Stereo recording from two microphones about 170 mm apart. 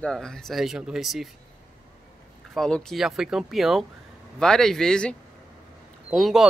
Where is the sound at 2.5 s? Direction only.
Centre (ahead or behind).